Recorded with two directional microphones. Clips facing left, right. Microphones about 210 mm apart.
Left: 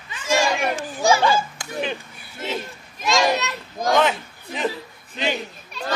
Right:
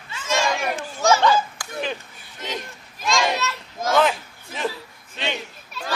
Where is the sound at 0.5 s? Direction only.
15° left (ahead or behind).